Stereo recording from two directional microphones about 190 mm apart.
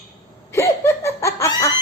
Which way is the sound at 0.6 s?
15° left (ahead or behind).